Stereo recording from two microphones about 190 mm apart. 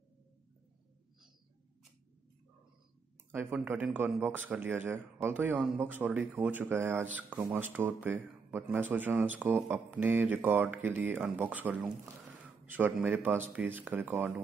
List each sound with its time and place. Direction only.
3.3 s speech: 10° right (ahead or behind)